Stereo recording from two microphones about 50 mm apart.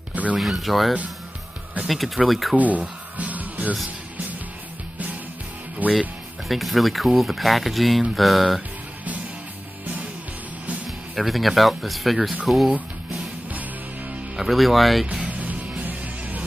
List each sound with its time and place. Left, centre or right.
0.1 s a sound: right
0.4 s speech: centre
2.5 s speech: right
3.2 s music: right
5.8 s speech: right
6.5 s speech: centre
11.1 s speech: centre
14.3 s speech: centre
15.2 s music: right